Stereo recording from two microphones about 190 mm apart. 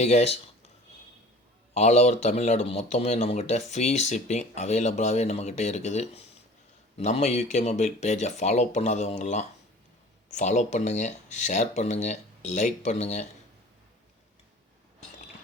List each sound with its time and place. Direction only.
0.0 s speech: 35° left (ahead or behind)
1.7 s speech: 35° left (ahead or behind)